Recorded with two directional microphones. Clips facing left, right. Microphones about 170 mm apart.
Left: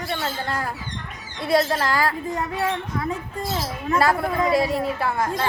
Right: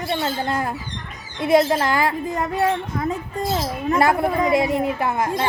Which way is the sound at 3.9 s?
20° right (ahead or behind).